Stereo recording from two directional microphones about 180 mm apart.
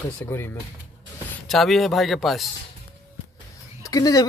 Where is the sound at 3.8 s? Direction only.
20° left (ahead or behind).